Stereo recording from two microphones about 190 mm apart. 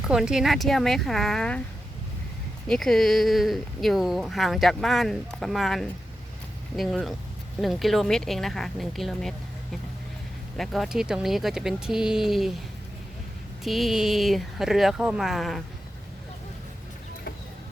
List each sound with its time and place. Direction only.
0.1 s speech: 5° right (ahead or behind)
2.6 s speech: centre (ahead or behind)
10.6 s speech: centre (ahead or behind)
13.7 s speech: centre (ahead or behind)